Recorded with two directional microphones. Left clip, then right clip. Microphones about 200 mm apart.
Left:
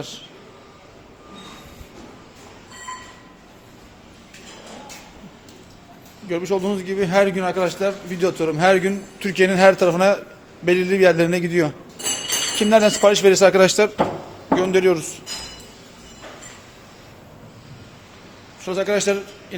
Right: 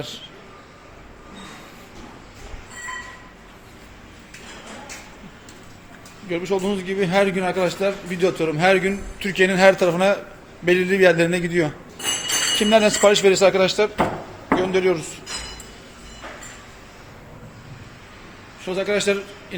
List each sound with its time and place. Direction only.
6.2 s a man's voice: 5° left (ahead or behind)
8.5 s a man's voice: 10° left (ahead or behind)
13.6 s a man's voice: 30° left (ahead or behind)
18.6 s a man's voice: 5° left (ahead or behind)